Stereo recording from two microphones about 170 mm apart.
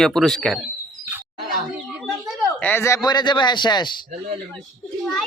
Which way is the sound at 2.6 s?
10° left (ahead or behind).